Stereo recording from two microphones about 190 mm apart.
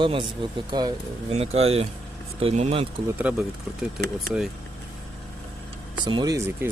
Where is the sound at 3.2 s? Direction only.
5° right (ahead or behind).